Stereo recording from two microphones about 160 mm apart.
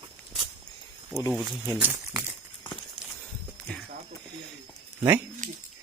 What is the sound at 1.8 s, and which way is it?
Speech, 10° right (ahead or behind).